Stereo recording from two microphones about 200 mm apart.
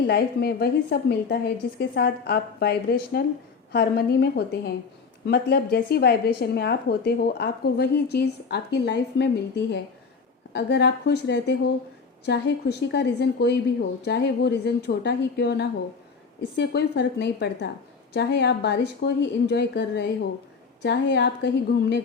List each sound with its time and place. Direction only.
0.1 s a woman's voice: 55° left (ahead or behind)